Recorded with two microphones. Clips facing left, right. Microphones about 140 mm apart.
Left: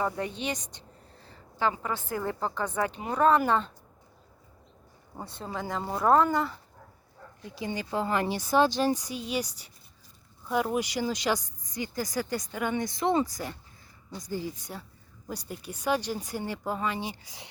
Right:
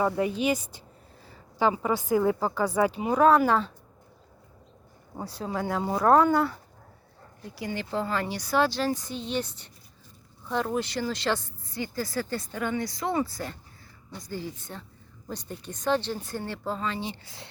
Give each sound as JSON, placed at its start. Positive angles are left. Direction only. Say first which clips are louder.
{"t": 0.2, "sound": "a woman's voice", "louder": "right 7 dB", "side_deg": -10}
{"t": 5.1, "sound": "speech", "louder": "right 4 dB", "side_deg": 0}
{"t": 7.5, "sound": "speech", "louder": "even", "side_deg": 20}